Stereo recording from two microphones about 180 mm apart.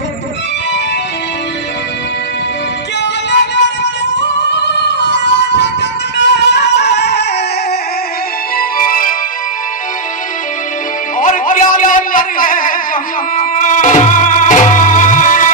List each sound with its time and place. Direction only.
4.5 s music: 75° left (ahead or behind)
8.5 s music: 50° left (ahead or behind)
11.1 s a sound: 45° left (ahead or behind)
13.4 s music: 45° left (ahead or behind)